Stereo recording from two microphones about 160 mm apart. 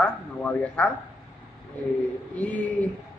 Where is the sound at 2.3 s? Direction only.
10° left (ahead or behind).